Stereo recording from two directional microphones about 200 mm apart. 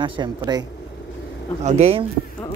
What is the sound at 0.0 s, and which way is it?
Speech, 25° right (ahead or behind).